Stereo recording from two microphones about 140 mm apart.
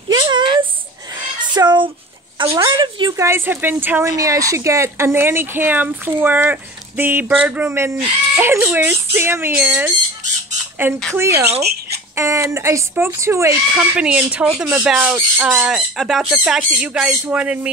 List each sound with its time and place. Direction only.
0.1 s a sound: 35° right (ahead or behind)
2.4 s speech: 20° right (ahead or behind)
2.7 s speech: 35° right (ahead or behind)
3.2 s speech: 20° right (ahead or behind)
12.2 s speech: 20° right (ahead or behind)
13.7 s speech: 10° right (ahead or behind)